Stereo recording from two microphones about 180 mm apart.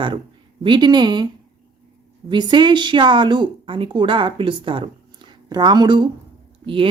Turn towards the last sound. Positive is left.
turn(degrees=-30)  # may be behind; listen again after turning